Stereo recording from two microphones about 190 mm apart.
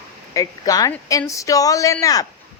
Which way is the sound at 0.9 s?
10° left (ahead or behind).